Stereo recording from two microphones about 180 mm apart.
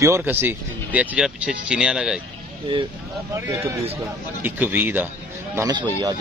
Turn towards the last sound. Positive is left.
turn(degrees=-20)  # may be behind; listen again after turning